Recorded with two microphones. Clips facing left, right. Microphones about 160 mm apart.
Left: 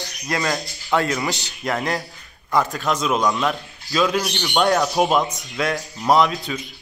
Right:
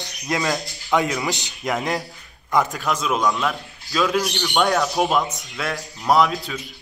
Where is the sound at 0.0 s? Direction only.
20° right (ahead or behind).